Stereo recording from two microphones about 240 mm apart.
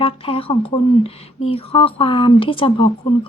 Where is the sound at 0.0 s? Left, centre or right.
Left.